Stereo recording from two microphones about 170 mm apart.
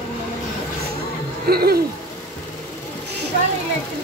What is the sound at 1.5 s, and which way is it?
Speech, 65° right (ahead or behind).